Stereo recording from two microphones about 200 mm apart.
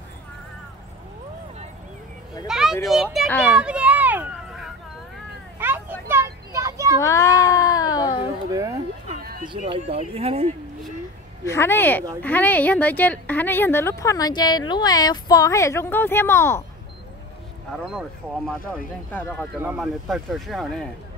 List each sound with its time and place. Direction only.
2.4 s a child's voice: centre (ahead or behind)
3.5 s a sound: 5° right (ahead or behind)
5.6 s vehicle: 10° right (ahead or behind)
7.0 s cat: 15° left (ahead or behind)
8.5 s a sound: 15° right (ahead or behind)
9.2 s a sound: 50° right (ahead or behind)
9.7 s speech: 30° right (ahead or behind)
11.4 s speech: 10° left (ahead or behind)
17.9 s speech: centre (ahead or behind)